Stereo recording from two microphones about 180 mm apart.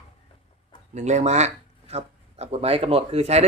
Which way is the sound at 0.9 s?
40° right (ahead or behind).